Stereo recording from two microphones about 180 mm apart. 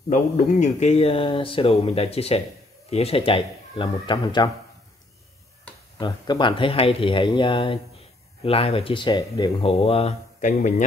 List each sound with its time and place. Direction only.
0.1 s speech: 40° left (ahead or behind); by 4.5 s 25° left (ahead or behind)
5.9 s speech: 25° left (ahead or behind)